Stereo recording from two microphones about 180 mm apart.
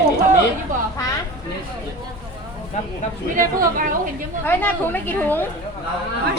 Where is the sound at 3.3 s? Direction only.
50° right (ahead or behind).